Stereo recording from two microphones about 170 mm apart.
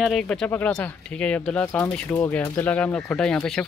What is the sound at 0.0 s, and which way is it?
Speech, 5° left (ahead or behind).